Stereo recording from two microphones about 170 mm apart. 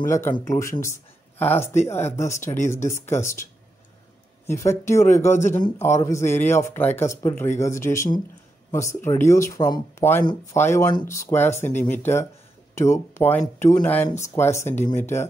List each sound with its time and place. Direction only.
0.1 s speech: 15° left (ahead or behind)
4.5 s speech: 15° left (ahead or behind)